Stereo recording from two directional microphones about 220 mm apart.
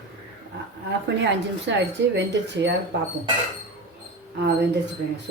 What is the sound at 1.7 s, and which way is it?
Speech, 55° right (ahead or behind).